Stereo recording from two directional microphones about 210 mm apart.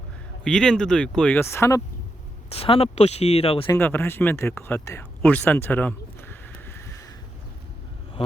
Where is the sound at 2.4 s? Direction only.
25° left (ahead or behind).